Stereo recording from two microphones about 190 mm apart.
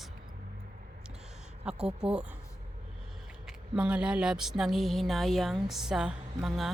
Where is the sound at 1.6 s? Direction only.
5° right (ahead or behind).